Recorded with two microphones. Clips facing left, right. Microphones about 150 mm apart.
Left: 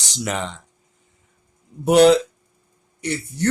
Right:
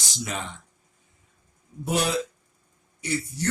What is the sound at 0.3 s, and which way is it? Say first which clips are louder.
Speech: left 8 dB; 80° left.